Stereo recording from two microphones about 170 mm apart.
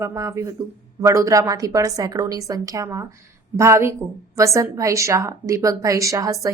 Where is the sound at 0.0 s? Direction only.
20° right (ahead or behind).